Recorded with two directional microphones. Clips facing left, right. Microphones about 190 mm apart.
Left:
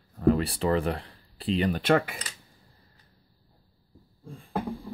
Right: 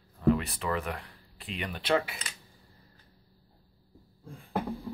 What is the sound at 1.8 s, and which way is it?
Speech, 50° left (ahead or behind).